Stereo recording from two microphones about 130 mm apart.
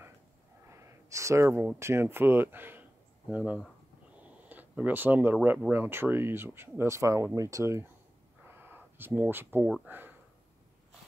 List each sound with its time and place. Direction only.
0.7 s gasp: 20° right (ahead or behind)
1.8 s a man's voice: 20° right (ahead or behind)
8.5 s a sound: 15° right (ahead or behind)
9.8 s speech: 15° right (ahead or behind)